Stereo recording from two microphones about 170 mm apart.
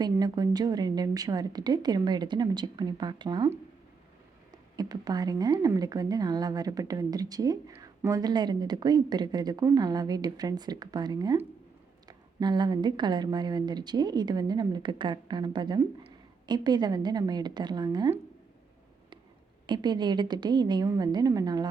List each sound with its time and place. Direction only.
0.0 s a woman's voice: 25° right (ahead or behind)
4.8 s a woman's voice: 20° right (ahead or behind)
19.6 s a woman's voice: 25° right (ahead or behind)